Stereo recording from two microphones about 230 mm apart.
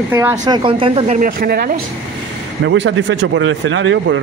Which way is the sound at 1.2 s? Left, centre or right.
Right.